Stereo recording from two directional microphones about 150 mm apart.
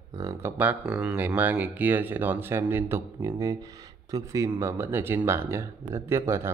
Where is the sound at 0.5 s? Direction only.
10° right (ahead or behind).